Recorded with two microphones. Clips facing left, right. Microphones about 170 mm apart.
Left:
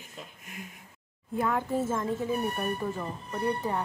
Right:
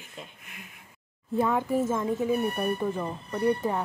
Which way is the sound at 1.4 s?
15° right (ahead or behind).